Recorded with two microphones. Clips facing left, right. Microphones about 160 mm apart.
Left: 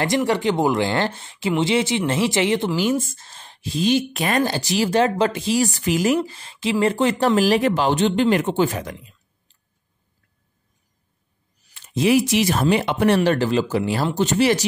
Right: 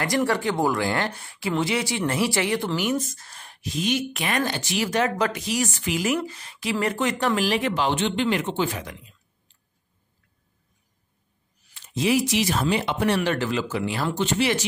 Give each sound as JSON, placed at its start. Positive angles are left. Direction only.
{"t": 0.3, "sound": "speech", "side_deg": 20}
{"t": 11.7, "sound": "speech", "side_deg": 60}
{"t": 13.2, "sound": "speech", "side_deg": 35}